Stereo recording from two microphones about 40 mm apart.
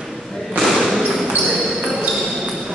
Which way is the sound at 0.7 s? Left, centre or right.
Centre.